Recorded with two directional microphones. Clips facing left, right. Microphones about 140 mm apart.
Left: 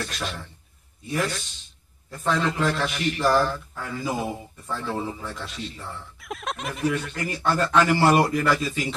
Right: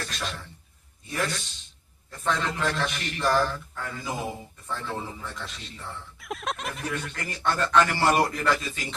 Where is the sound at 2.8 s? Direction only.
5° left (ahead or behind).